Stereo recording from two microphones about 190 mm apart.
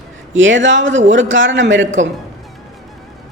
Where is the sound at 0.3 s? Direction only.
80° right.